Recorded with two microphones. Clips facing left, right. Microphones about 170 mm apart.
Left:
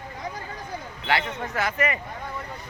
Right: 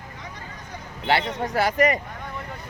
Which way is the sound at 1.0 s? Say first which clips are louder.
Right 4 dB; 35° right (ahead or behind).